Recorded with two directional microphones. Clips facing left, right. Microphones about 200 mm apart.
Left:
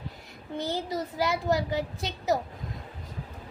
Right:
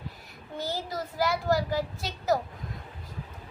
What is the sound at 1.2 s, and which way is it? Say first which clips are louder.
A child's voice: right 1 dB; 20° left (ahead or behind).